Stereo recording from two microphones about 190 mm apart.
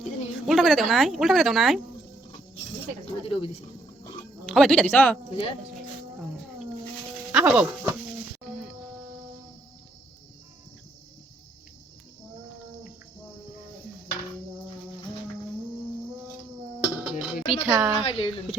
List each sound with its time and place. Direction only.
0.4 s speech: centre (ahead or behind)
3.2 s speech: 30° left (ahead or behind)
4.4 s speech: 5° left (ahead or behind)
7.3 s speech: 5° right (ahead or behind)
16.8 s dishes: 5° right (ahead or behind)
17.6 s speech: 5° right (ahead or behind)
18.0 s a woman's voice: 30° left (ahead or behind)